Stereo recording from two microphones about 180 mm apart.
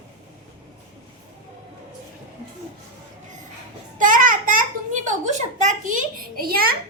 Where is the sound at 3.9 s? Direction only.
45° right (ahead or behind).